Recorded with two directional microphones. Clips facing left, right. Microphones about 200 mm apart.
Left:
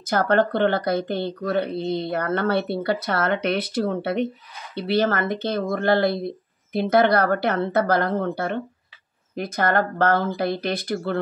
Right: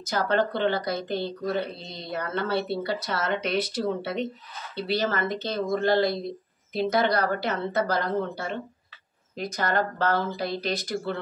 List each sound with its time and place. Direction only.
0.0 s speech: 55° left (ahead or behind)